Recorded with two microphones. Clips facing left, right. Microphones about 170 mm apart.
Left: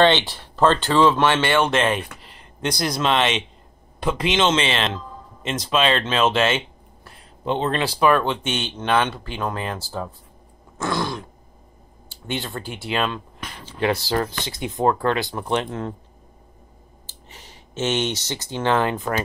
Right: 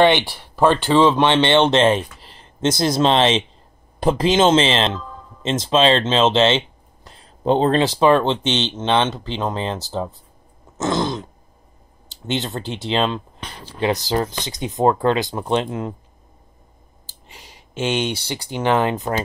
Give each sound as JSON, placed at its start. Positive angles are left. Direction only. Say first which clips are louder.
{"t": 0.0, "sound": "speech", "louder": "right 2 dB", "side_deg": -15}
{"t": 12.3, "sound": "speech", "louder": "right 4 dB", "side_deg": -20}
{"t": 17.0, "sound": "speech", "louder": "right 1 dB", "side_deg": -15}